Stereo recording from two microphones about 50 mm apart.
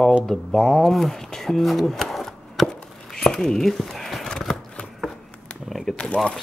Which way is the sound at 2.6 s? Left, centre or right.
Centre.